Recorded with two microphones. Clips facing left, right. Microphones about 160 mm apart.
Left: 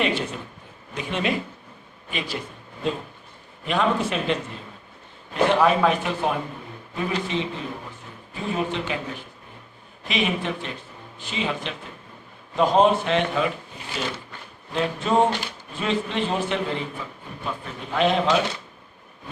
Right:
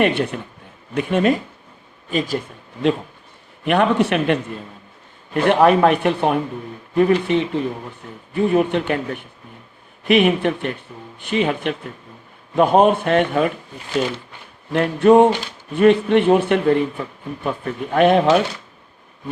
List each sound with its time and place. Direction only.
0.0 s a man's voice: 60° right (ahead or behind)
0.9 s speech: 50° right (ahead or behind)
3.7 s a man's voice: 65° right (ahead or behind); by 13.5 s 50° right (ahead or behind)
14.7 s a man's voice: 60° right (ahead or behind)